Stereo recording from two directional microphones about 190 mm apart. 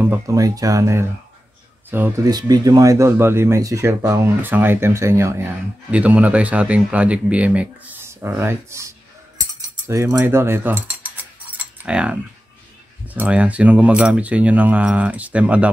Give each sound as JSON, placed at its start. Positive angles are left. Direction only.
{"t": 0.0, "sound": "speech", "side_deg": -15}
{"t": 9.4, "sound": "cutlery", "side_deg": -15}
{"t": 13.0, "sound": "speech", "side_deg": -10}